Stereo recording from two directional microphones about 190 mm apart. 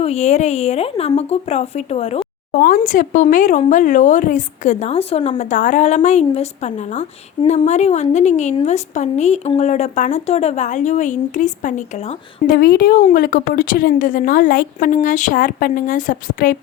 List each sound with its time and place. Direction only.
0.0 s speech: 35° left (ahead or behind)
12.5 s a woman's voice: 50° left (ahead or behind)